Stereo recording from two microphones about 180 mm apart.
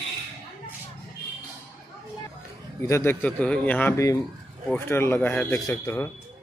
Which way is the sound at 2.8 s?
15° left (ahead or behind).